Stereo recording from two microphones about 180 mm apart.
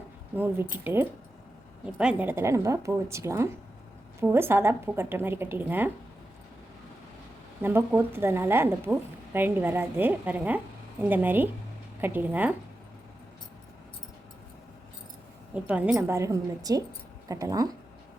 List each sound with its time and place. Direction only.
0.3 s a woman's voice: 10° right (ahead or behind)
7.6 s a woman's voice: 10° right (ahead or behind)
15.5 s a woman's voice: 5° right (ahead or behind)